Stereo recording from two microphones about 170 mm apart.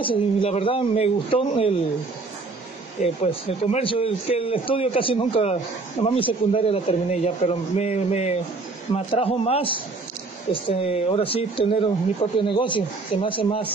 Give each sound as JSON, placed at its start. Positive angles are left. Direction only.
{"t": 0.0, "sound": "a man's voice", "side_deg": 30}
{"t": 3.0, "sound": "a man's voice", "side_deg": 35}